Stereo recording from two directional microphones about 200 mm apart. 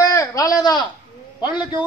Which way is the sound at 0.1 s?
15° left (ahead or behind).